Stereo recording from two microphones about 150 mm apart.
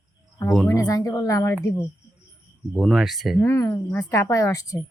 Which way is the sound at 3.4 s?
20° left (ahead or behind).